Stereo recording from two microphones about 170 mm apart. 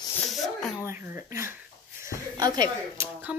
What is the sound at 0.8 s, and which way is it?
Speech, 15° right (ahead or behind).